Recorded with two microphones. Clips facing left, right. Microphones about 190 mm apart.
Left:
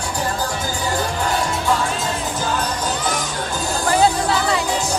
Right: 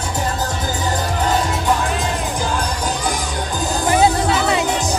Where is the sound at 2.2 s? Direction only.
15° right (ahead or behind).